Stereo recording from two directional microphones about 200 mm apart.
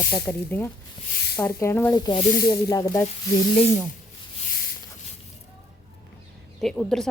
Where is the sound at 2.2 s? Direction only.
40° left (ahead or behind).